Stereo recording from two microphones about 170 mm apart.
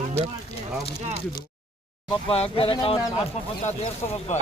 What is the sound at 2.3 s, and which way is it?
Speech, 35° left (ahead or behind).